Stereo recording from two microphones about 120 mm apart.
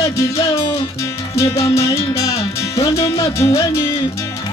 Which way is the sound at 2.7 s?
25° left (ahead or behind).